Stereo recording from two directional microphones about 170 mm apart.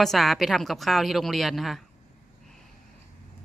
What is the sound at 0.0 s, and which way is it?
Speech, centre (ahead or behind).